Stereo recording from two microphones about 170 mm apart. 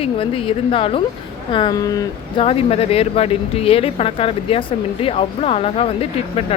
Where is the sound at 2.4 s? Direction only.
35° left (ahead or behind).